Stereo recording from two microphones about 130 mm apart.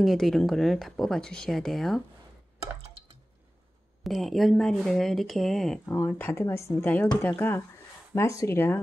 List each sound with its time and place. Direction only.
0.0 s speech: centre (ahead or behind)
4.0 s speech: centre (ahead or behind)
5.9 s speech: 20° left (ahead or behind)